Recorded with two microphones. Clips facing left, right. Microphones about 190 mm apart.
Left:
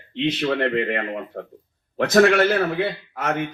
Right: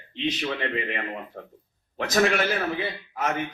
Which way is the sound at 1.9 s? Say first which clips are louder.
Left 7 dB; 60° left (ahead or behind).